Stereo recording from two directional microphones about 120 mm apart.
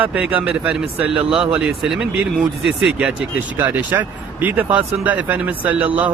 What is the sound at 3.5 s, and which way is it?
Speech, 15° right (ahead or behind).